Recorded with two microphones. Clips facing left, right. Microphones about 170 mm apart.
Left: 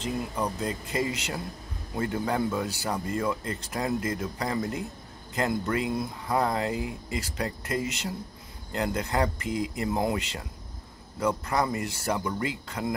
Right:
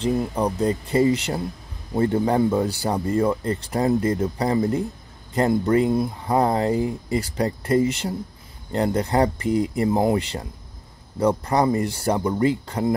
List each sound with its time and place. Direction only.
0.0 s speech: 35° right (ahead or behind)